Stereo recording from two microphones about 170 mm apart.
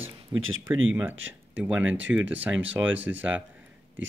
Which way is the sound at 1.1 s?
90° right.